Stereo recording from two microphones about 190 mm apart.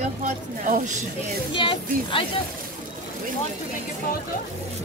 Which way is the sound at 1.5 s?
25° left (ahead or behind).